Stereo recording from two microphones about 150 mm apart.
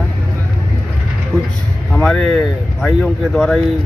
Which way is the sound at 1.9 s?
5° left (ahead or behind).